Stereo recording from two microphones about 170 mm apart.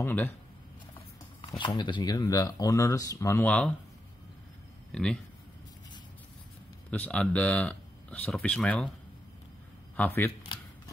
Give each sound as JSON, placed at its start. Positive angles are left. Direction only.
{"t": 0.0, "sound": "speech", "side_deg": 10}
{"t": 1.6, "sound": "speech", "side_deg": 25}
{"t": 4.9, "sound": "speech", "side_deg": 5}
{"t": 6.9, "sound": "speech", "side_deg": 5}
{"t": 9.9, "sound": "speech", "side_deg": 10}